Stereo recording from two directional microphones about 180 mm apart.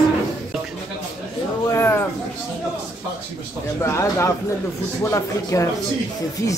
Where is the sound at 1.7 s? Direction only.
15° left (ahead or behind).